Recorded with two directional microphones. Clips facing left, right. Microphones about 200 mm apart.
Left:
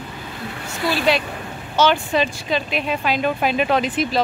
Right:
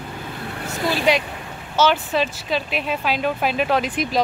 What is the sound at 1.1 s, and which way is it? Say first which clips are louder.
Speech: even; 15° right (ahead or behind).